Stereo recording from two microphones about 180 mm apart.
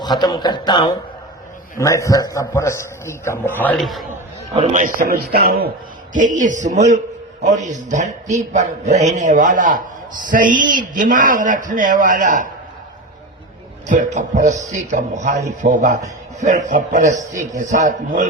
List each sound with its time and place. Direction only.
0.0 s a man's voice: 25° left (ahead or behind); by 4.0 s centre (ahead or behind)
4.7 s a man's voice: 45° right (ahead or behind)
6.1 s a man's voice: 45° right (ahead or behind)
13.9 s a man's voice: 45° right (ahead or behind)